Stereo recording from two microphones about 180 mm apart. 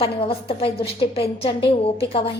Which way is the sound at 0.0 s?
30° left (ahead or behind).